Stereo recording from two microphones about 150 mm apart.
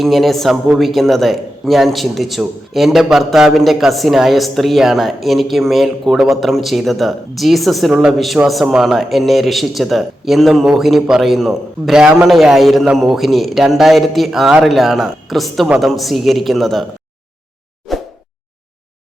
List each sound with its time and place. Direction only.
0.0 s a man's voice: centre (ahead or behind)
17.9 s plop: centre (ahead or behind)